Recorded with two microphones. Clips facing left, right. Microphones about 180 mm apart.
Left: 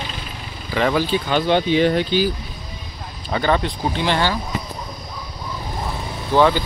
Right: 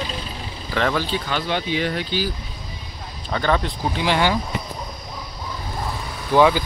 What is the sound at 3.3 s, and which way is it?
Speech, 5° left (ahead or behind).